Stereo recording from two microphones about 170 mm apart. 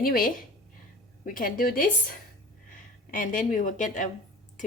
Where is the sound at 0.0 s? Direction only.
55° left (ahead or behind).